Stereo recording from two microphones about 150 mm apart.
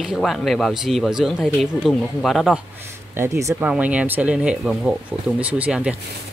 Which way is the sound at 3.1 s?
20° right (ahead or behind).